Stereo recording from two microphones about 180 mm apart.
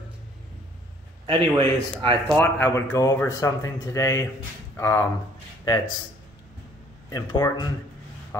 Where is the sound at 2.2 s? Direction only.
10° left (ahead or behind).